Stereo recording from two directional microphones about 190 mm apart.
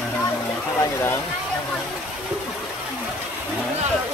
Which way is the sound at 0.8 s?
15° left (ahead or behind).